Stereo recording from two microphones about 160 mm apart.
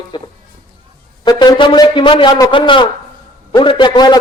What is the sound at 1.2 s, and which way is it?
A man's voice, 30° left (ahead or behind).